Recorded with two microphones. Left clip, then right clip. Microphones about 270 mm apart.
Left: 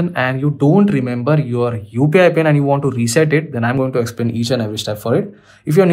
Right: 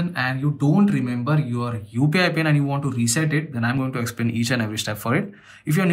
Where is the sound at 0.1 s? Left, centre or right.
Centre.